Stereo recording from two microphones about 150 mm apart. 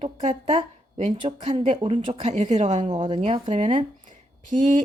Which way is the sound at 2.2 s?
50° right (ahead or behind).